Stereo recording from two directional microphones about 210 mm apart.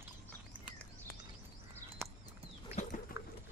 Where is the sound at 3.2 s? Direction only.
15° right (ahead or behind).